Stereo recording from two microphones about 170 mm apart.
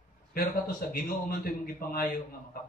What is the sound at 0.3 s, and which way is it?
A man's voice, 60° left (ahead or behind).